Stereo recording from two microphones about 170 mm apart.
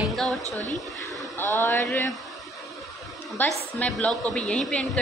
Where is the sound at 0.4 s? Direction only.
20° right (ahead or behind).